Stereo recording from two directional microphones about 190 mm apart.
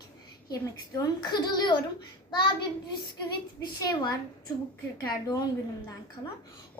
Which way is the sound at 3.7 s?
20° left (ahead or behind).